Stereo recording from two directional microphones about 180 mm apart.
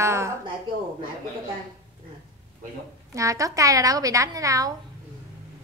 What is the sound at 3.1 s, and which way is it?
A woman's voice, 20° right (ahead or behind).